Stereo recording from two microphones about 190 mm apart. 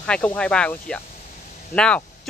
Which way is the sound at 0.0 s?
5° left (ahead or behind).